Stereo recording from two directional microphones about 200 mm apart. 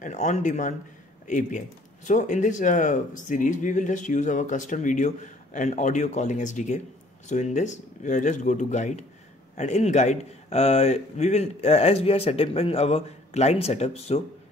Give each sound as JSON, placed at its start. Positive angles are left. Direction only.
{"t": 0.0, "sound": "speech", "side_deg": 35}